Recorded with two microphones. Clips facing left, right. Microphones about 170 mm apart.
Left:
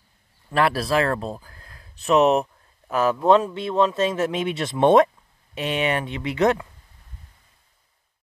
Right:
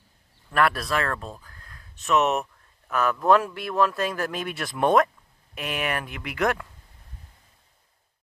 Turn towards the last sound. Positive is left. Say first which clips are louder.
# left 5 dB
turn(degrees=25)  # may be behind; listen again after turning